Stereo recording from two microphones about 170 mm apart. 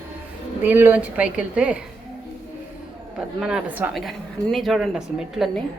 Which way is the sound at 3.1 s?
5° right (ahead or behind).